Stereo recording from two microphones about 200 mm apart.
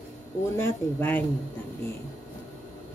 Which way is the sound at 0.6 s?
10° left (ahead or behind).